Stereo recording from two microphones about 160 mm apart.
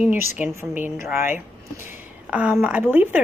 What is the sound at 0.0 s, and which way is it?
A woman's voice, 10° right (ahead or behind).